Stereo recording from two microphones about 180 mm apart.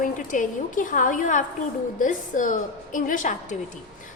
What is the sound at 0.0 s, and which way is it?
A woman's voice, 50° left (ahead or behind).